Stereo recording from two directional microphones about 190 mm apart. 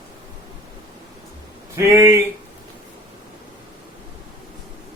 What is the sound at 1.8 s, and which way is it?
Speech, 15° right (ahead or behind).